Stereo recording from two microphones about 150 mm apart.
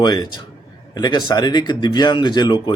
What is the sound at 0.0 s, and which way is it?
A man's voice, 25° left (ahead or behind).